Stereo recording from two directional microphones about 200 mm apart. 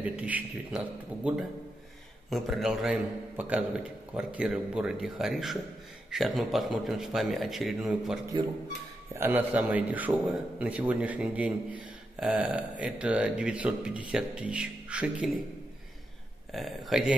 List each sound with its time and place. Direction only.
0.0 s a man's voice: 5° right (ahead or behind)
16.5 s a man's voice: centre (ahead or behind)